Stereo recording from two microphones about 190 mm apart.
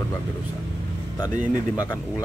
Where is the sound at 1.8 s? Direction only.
20° left (ahead or behind).